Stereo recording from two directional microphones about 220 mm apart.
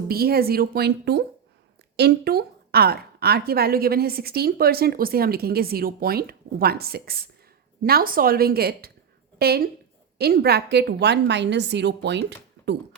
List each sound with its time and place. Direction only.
0.1 s a woman's voice: 45° right (ahead or behind)